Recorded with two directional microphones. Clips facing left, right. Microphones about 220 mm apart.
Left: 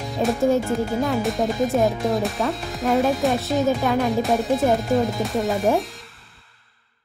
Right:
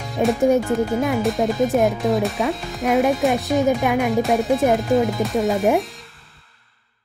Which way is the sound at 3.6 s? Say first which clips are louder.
Even; 15° right (ahead or behind).